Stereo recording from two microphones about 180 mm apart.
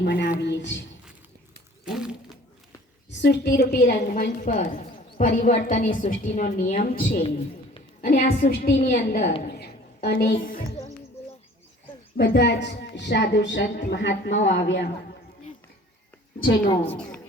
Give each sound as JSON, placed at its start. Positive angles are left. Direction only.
{"t": 0.0, "sound": "a woman's voice", "side_deg": 70}
{"t": 1.8, "sound": "a sound", "side_deg": -5}
{"t": 3.2, "sound": "a woman's voice", "side_deg": 70}
{"t": 7.1, "sound": "a woman's voice", "side_deg": 35}
{"t": 8.7, "sound": "a woman's voice", "side_deg": 35}
{"t": 9.0, "sound": "a woman's voice", "side_deg": 70}
{"t": 9.5, "sound": "a sound", "side_deg": 60}
{"t": 12.1, "sound": "a woman's voice", "side_deg": 60}
{"t": 16.9, "sound": "a woman's voice", "side_deg": 5}